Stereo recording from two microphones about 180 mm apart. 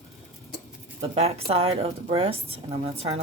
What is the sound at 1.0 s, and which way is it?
Speech, 35° right (ahead or behind).